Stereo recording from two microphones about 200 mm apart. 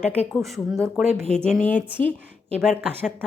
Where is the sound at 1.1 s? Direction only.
35° left (ahead or behind).